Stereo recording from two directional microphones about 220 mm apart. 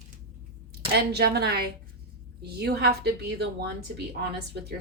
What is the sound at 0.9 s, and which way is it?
A woman's voice, 50° right (ahead or behind).